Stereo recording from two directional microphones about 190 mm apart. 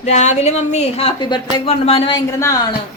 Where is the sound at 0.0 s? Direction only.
35° left (ahead or behind).